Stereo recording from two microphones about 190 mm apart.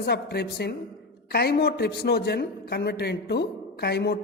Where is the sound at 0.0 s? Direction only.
60° left (ahead or behind).